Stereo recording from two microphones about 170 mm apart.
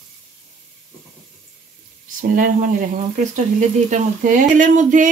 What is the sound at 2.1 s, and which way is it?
Speech, 50° right (ahead or behind).